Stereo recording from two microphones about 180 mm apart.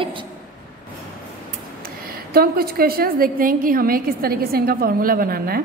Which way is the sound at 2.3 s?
55° right (ahead or behind).